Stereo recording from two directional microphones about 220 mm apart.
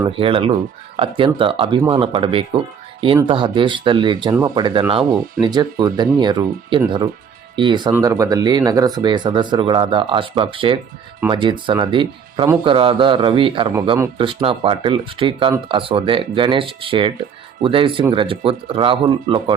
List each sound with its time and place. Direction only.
0.0 s speech: 25° right (ahead or behind)